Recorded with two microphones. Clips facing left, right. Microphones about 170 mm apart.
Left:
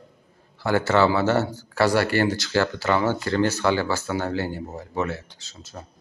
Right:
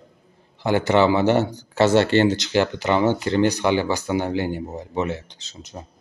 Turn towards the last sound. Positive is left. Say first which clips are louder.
# right 3 dB
turn(degrees=-20)  # may be behind; listen again after turning